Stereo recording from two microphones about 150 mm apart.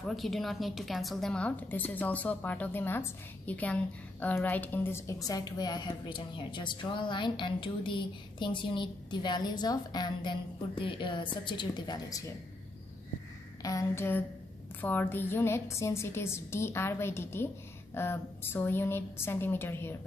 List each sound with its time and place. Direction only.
0.0 s a woman's voice: centre (ahead or behind); by 12.2 s 30° left (ahead or behind)
13.6 s a woman's voice: 25° left (ahead or behind)